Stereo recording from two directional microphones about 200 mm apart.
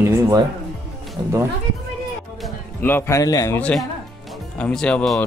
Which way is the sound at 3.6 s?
5° left (ahead or behind).